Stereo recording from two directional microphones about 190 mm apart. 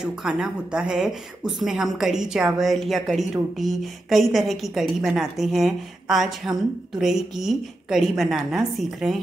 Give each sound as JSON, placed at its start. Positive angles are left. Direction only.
{"t": 0.0, "sound": "speech", "side_deg": -5}